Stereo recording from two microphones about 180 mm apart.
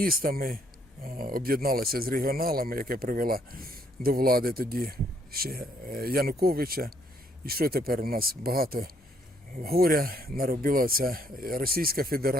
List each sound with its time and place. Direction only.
0.0 s a man's voice: 55° right (ahead or behind)